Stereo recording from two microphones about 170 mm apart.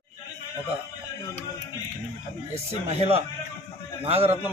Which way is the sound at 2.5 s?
35° right (ahead or behind).